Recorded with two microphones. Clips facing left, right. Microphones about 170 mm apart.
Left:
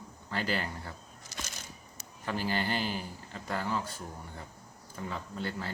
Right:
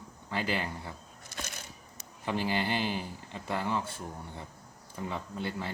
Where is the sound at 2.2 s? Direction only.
20° right (ahead or behind).